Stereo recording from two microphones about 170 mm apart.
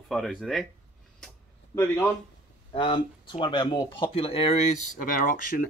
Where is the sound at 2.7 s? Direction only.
30° left (ahead or behind).